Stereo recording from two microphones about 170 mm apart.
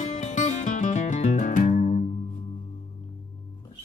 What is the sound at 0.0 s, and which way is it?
Music, 45° left (ahead or behind).